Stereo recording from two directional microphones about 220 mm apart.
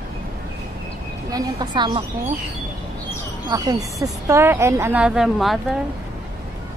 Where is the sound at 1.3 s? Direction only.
20° right (ahead or behind).